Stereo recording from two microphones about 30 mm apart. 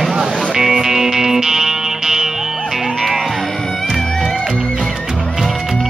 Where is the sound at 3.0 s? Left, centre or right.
Centre.